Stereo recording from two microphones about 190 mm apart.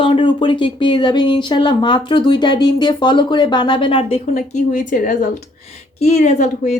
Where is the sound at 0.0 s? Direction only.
25° left (ahead or behind).